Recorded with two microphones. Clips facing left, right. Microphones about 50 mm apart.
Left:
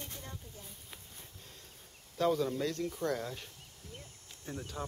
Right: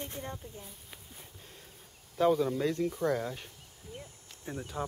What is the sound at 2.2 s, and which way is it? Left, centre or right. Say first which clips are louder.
Speech: right 4 dB; centre.